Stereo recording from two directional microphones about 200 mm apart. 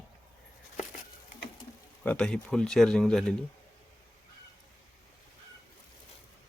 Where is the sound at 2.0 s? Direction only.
5° left (ahead or behind).